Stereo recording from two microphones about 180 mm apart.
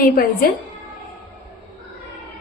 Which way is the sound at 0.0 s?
55° left (ahead or behind).